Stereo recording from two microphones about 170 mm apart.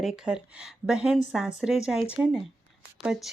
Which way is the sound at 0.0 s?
Centre (ahead or behind).